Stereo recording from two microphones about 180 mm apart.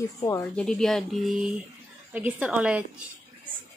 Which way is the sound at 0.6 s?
5° left (ahead or behind).